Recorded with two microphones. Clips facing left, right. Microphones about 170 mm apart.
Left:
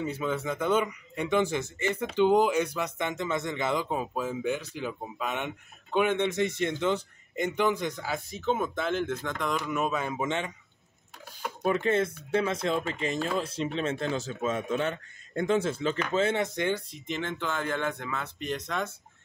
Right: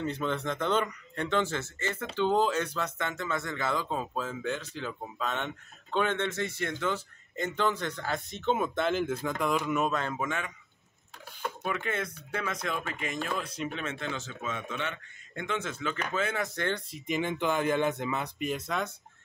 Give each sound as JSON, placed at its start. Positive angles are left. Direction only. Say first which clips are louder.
{"t": 0.0, "sound": "speech", "louder": "left 1 dB", "side_deg": 5}
{"t": 10.1, "sound": "speech", "louder": "left 3 dB", "side_deg": 25}
{"t": 11.6, "sound": "speech", "louder": "left 9 dB", "side_deg": 30}
{"t": 17.0, "sound": "speech", "louder": "right 3 dB", "side_deg": -10}
{"t": 18.7, "sound": "speech", "louder": "left 1 dB", "side_deg": 0}